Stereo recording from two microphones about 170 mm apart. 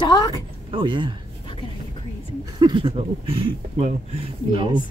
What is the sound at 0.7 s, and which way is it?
Speech, 30° right (ahead or behind).